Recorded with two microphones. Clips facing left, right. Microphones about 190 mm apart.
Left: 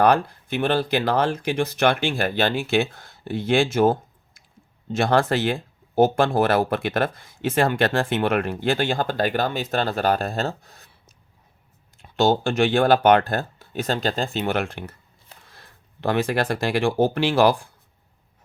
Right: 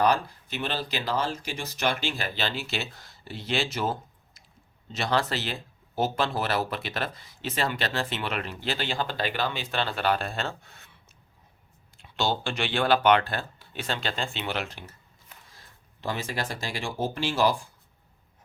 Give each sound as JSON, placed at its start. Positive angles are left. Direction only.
{"t": 0.0, "sound": "speech", "side_deg": 55}
{"t": 12.0, "sound": "speech", "side_deg": 45}